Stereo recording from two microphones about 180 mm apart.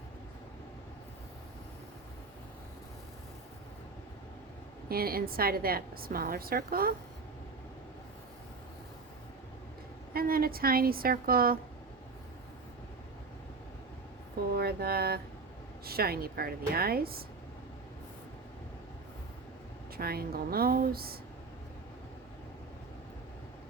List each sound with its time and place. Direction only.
4.9 s a woman's voice: 55° right (ahead or behind)
10.2 s a woman's voice: 55° right (ahead or behind)
14.5 s a sound: 60° right (ahead or behind)
15.8 s a woman's voice: 60° right (ahead or behind)
20.0 s a woman's voice: 60° right (ahead or behind)